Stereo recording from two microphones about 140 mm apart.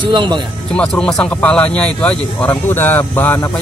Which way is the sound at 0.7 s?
5° left (ahead or behind).